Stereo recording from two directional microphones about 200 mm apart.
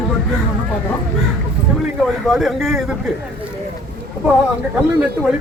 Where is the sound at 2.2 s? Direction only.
Centre (ahead or behind).